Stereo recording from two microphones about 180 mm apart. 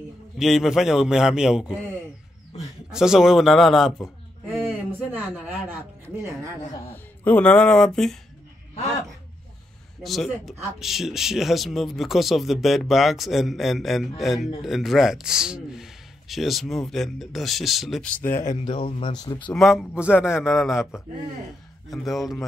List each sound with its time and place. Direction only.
0.4 s speech: centre (ahead or behind)
2.9 s speech: 5° right (ahead or behind)
4.6 s a sound: 10° right (ahead or behind)
7.2 s speech: 10° left (ahead or behind)
10.0 s speech: centre (ahead or behind)
18.5 s speech: 30° left (ahead or behind)
19.3 s speech: 5° left (ahead or behind)